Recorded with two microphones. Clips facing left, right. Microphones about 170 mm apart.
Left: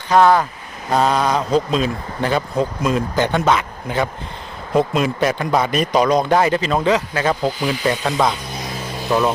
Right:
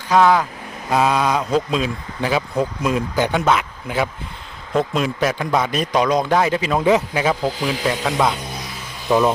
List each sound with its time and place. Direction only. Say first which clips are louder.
0.1 s speech: left 1 dB; centre (ahead or behind)
4.7 s speech: left 3 dB; 5° left (ahead or behind)
6.8 s speech: right 1 dB; 15° right (ahead or behind)
9.1 s speech: right 2 dB; 10° right (ahead or behind)